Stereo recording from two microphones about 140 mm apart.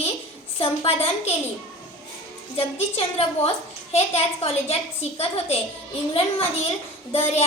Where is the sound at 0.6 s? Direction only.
40° left (ahead or behind).